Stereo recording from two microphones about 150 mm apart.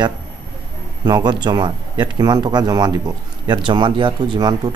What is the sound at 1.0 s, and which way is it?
Speech, 30° right (ahead or behind).